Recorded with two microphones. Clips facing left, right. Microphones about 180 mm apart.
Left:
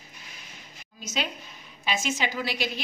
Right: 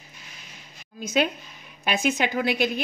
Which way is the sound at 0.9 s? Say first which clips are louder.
Right 9 dB; 55° right (ahead or behind).